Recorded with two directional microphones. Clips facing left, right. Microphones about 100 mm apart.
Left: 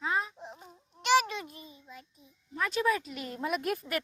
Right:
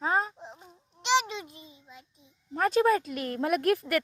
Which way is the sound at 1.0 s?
20° right (ahead or behind).